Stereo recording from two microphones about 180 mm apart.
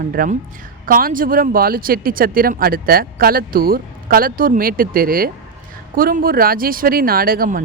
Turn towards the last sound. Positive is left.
turn(degrees=-50)  # may be behind; listen again after turning